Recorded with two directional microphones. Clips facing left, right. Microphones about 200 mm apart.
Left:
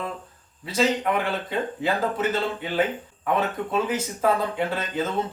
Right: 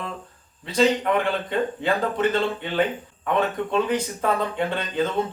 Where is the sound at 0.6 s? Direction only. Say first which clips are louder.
Right 3 dB; 5° left (ahead or behind).